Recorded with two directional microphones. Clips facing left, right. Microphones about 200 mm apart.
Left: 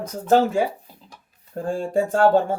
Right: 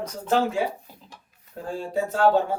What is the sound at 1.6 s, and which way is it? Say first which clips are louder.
Speech: left 5 dB; 50° left (ahead or behind).